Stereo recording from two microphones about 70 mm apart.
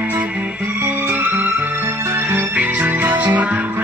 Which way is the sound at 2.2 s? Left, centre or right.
Right.